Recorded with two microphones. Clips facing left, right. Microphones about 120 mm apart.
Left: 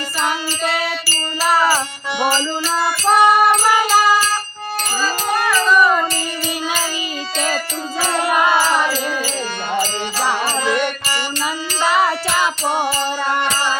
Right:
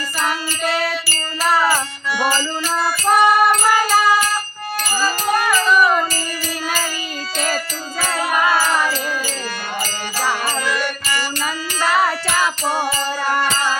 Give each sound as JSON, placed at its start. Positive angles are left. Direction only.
{"t": 0.6, "sound": "music", "side_deg": 0}
{"t": 1.7, "sound": "music", "side_deg": 25}
{"t": 3.1, "sound": "music", "side_deg": 0}
{"t": 5.3, "sound": "music", "side_deg": 0}
{"t": 7.3, "sound": "music", "side_deg": 0}
{"t": 10.4, "sound": "music", "side_deg": 25}
{"t": 11.9, "sound": "music", "side_deg": 0}
{"t": 12.6, "sound": "music", "side_deg": 25}